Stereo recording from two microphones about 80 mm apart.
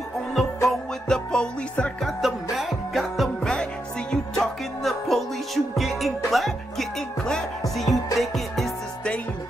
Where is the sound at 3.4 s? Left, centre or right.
Centre.